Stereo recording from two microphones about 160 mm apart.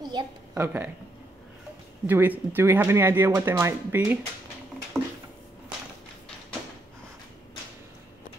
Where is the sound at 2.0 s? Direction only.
10° right (ahead or behind).